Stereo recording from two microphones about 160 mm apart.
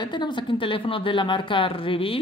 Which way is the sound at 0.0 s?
30° left (ahead or behind).